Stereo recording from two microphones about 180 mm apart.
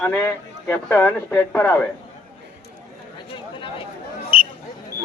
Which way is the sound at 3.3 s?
30° left (ahead or behind).